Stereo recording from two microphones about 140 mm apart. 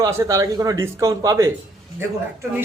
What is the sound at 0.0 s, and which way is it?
A man's voice, 20° right (ahead or behind).